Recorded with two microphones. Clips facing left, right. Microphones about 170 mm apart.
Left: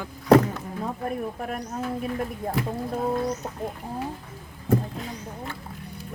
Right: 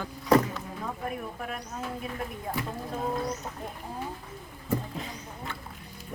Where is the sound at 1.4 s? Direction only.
45° left (ahead or behind).